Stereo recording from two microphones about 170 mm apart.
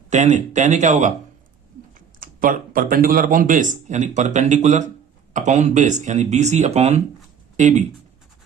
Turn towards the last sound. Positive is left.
turn(degrees=-45)  # may be behind; listen again after turning